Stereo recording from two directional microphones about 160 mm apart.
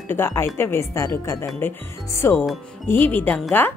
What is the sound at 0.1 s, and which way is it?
Speech, 15° left (ahead or behind).